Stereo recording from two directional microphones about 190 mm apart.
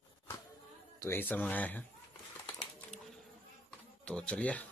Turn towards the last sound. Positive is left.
turn(degrees=5)  # may be behind; listen again after turning